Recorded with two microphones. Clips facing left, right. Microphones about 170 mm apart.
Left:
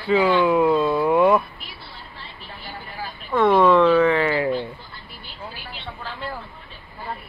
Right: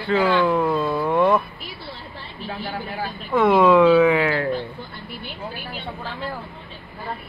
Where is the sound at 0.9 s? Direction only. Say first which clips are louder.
Left 2 dB; 10° left (ahead or behind).